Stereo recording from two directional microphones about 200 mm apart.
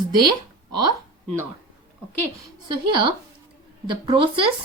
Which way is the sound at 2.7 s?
25° right (ahead or behind).